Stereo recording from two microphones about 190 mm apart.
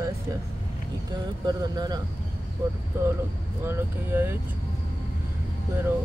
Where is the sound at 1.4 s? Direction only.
20° right (ahead or behind).